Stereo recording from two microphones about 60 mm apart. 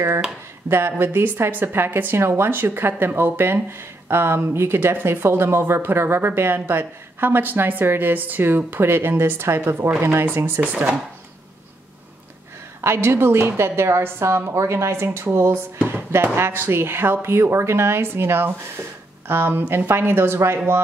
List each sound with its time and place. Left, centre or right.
0.7 s speech: right
2.1 s speech: right
9.8 s speech: right
10.1 s a woman's voice: right
10.6 s speech: right
12.8 s a woman's voice: right